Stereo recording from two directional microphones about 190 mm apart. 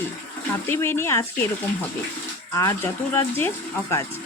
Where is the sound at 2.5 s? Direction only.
15° left (ahead or behind).